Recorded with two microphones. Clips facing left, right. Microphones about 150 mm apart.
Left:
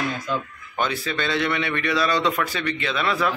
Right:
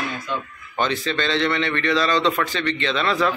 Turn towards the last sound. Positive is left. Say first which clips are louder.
# right 2 dB
turn(degrees=5)  # may be behind; listen again after turning